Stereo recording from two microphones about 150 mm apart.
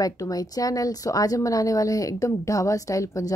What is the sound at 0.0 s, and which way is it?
Speech, 25° left (ahead or behind).